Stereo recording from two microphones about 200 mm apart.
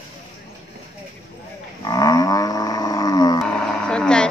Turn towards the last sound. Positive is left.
turn(degrees=5)  # may be behind; listen again after turning